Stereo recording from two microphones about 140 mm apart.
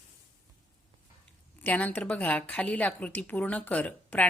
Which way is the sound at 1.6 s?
10° left (ahead or behind).